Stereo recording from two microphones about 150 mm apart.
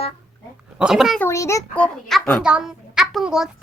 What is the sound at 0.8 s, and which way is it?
Speech, 5° right (ahead or behind).